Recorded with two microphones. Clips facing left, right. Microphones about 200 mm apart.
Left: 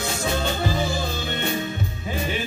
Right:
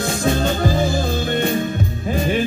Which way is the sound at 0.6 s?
45° right (ahead or behind).